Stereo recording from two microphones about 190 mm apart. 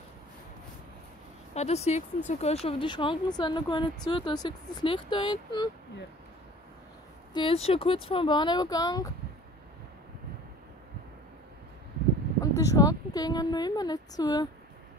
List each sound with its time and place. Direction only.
1.5 s speech: 35° left (ahead or behind)
7.3 s speech: 30° left (ahead or behind)
12.5 s speech: 15° left (ahead or behind)